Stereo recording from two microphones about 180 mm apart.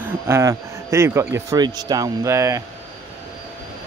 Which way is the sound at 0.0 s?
15° right (ahead or behind).